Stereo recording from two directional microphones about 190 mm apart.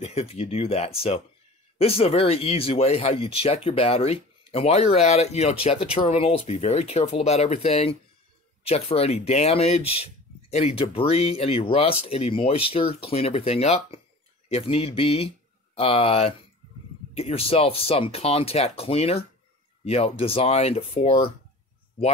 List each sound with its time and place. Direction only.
0.0 s speech: 30° left (ahead or behind)